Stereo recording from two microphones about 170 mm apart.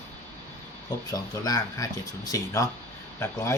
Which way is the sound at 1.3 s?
20° left (ahead or behind).